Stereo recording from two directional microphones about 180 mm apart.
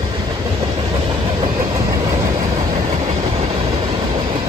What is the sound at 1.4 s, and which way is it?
Train, 30° right (ahead or behind).